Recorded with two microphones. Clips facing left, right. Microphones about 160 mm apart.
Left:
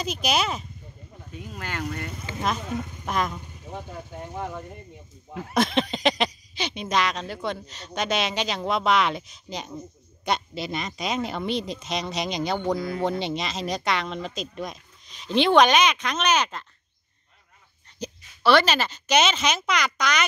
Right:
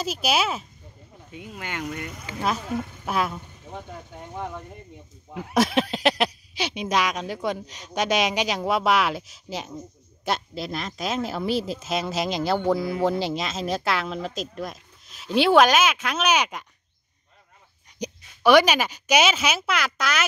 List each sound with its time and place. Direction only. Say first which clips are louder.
0.0 s speech: right 1 dB; 5° right (ahead or behind)
1.3 s speech: even; 15° right (ahead or behind)
3.1 s speech: right 1 dB; 5° right (ahead or behind)
5.3 s speech: right 2 dB; 10° right (ahead or behind)
17.9 s a woman's voice: right 2 dB; 15° right (ahead or behind)